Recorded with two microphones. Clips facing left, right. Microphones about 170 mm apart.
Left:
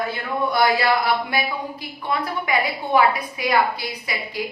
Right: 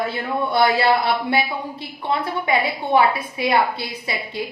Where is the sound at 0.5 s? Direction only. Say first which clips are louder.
Right 2 dB; 25° right (ahead or behind).